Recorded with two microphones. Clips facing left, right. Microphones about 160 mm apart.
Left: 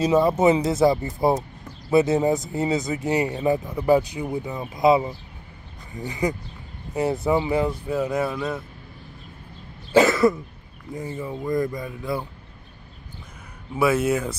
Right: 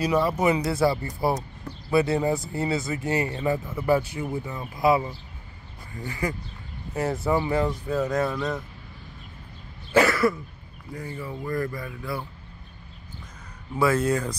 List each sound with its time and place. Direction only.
0.0 s speech: 20° left (ahead or behind); by 8.6 s 5° left (ahead or behind)
9.9 s cough: 20° left (ahead or behind)
11.0 s speech: 20° left (ahead or behind)
13.7 s speech: 10° left (ahead or behind)